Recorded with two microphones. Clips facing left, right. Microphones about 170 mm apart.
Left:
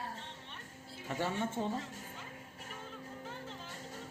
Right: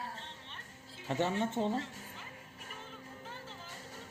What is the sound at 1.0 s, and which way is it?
Speech, 25° right (ahead or behind).